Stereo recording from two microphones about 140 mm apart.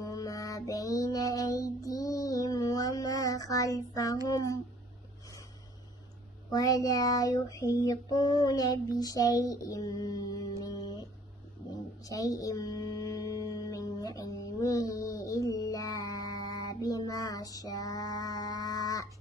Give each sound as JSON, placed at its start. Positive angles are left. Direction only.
{"t": 0.0, "sound": "female singing", "side_deg": 25}
{"t": 4.3, "sound": "child singing", "side_deg": 25}
{"t": 6.5, "sound": "child singing", "side_deg": 25}
{"t": 12.0, "sound": "music", "side_deg": 25}